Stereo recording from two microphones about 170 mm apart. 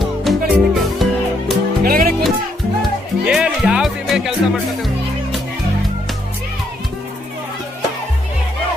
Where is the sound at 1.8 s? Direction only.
60° right (ahead or behind).